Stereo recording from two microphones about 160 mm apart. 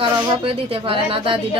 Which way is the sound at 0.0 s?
35° right (ahead or behind).